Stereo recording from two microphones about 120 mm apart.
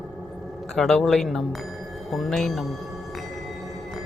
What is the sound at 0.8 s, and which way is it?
Speech, centre (ahead or behind).